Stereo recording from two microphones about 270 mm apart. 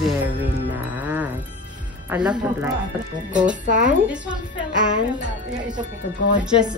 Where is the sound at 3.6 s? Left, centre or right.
Right.